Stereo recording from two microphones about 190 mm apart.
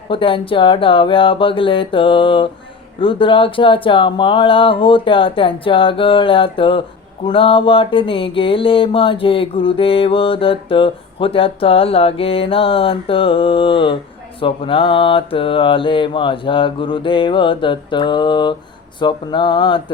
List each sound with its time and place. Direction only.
0.1 s mantra: 25° left (ahead or behind)